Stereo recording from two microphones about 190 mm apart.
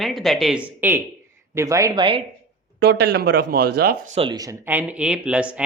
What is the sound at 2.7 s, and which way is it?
Speech, 60° right (ahead or behind).